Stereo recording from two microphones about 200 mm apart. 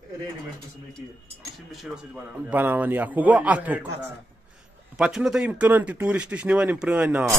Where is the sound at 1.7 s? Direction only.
Centre (ahead or behind).